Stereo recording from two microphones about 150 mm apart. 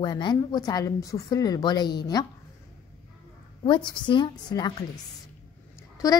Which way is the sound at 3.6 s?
30° left (ahead or behind).